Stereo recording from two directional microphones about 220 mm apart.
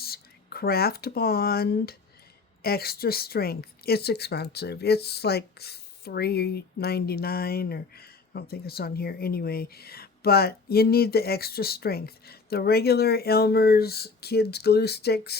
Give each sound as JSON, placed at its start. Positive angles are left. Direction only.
{"t": 0.0, "sound": "a woman's voice", "side_deg": 45}